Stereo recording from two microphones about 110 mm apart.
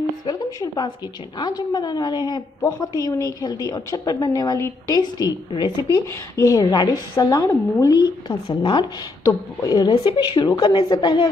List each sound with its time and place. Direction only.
0.3 s a woman's voice: 40° left (ahead or behind)
8.5 s a woman's voice: 45° left (ahead or behind)